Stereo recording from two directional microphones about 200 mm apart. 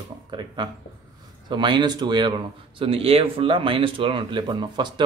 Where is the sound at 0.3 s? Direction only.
25° right (ahead or behind).